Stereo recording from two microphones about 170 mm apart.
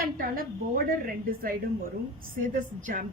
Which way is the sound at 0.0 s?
55° right (ahead or behind).